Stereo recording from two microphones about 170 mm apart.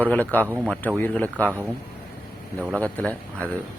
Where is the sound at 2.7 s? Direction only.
5° left (ahead or behind).